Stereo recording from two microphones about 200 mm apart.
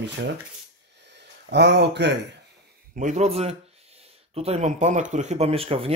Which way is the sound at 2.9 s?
35° right (ahead or behind).